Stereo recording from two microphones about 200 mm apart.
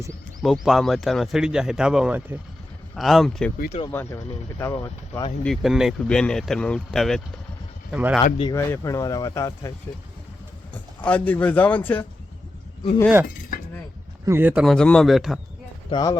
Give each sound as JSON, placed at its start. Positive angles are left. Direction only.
{"t": 0.4, "sound": "speech", "side_deg": 0}
{"t": 3.7, "sound": "speech", "side_deg": 25}
{"t": 3.9, "sound": "speech", "side_deg": 10}
{"t": 5.4, "sound": "speech", "side_deg": 0}
{"t": 8.4, "sound": "speech", "side_deg": 15}
{"t": 11.0, "sound": "speech", "side_deg": 5}
{"t": 14.3, "sound": "speech", "side_deg": -10}
{"t": 15.9, "sound": "speech", "side_deg": 20}